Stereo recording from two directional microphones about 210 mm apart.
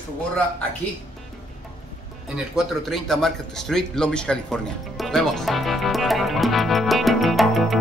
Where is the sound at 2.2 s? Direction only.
Centre (ahead or behind).